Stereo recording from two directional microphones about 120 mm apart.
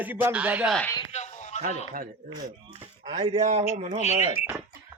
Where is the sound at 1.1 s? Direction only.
70° left (ahead or behind).